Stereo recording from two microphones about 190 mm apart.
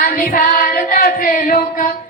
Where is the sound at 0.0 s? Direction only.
50° left (ahead or behind).